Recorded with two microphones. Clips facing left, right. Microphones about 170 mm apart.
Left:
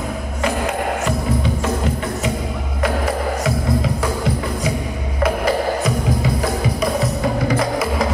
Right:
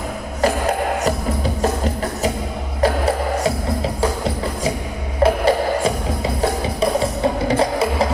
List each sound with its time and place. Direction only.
1.0 s music: 35° right (ahead or behind)
3.4 s music: 30° right (ahead or behind)
5.2 s music: 30° right (ahead or behind)